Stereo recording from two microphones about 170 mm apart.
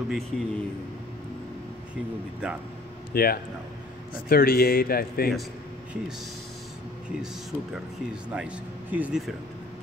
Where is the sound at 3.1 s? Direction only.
60° left (ahead or behind).